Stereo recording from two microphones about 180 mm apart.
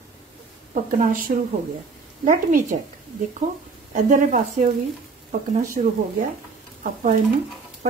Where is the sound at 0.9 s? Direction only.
50° right (ahead or behind).